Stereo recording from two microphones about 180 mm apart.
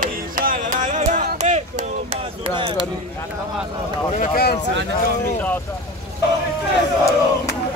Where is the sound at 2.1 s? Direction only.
25° right (ahead or behind).